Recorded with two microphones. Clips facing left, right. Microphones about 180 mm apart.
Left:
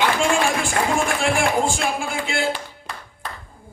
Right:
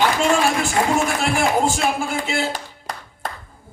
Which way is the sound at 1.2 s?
40° right (ahead or behind).